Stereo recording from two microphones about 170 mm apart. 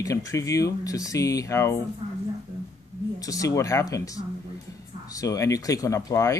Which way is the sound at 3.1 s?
20° left (ahead or behind).